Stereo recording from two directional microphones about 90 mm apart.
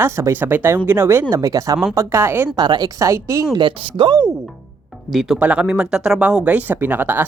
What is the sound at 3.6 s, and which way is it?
Speech, 60° right (ahead or behind).